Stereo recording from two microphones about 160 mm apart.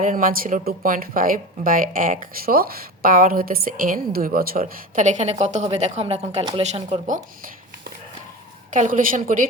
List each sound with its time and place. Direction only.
0.0 s speech: 55° right (ahead or behind)
8.7 s speech: 55° right (ahead or behind)